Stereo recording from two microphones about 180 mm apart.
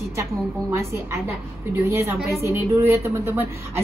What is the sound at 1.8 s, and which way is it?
A woman's voice, 15° right (ahead or behind).